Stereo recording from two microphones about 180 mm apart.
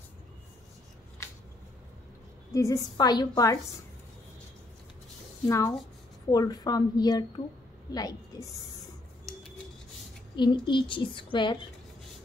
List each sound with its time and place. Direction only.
2.5 s a woman's voice: 15° left (ahead or behind)
5.5 s a woman's voice: 20° left (ahead or behind)
10.3 s a woman's voice: 25° left (ahead or behind)